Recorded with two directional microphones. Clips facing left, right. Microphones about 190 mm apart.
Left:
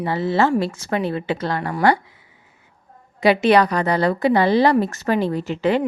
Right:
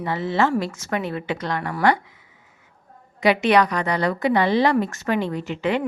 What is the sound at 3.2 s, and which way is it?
Speech, 35° left (ahead or behind).